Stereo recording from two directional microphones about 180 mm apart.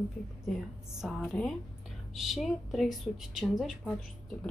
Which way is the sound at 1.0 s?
Centre (ahead or behind).